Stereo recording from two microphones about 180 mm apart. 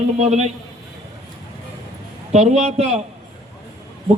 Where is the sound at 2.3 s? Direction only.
35° right (ahead or behind).